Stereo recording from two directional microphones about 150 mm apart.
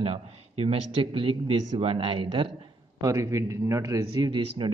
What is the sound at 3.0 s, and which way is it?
Speech, 25° right (ahead or behind).